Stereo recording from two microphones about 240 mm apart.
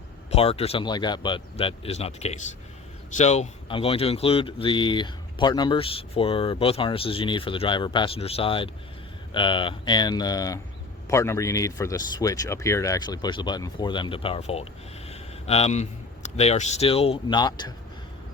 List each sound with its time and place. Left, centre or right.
0.3 s speech: left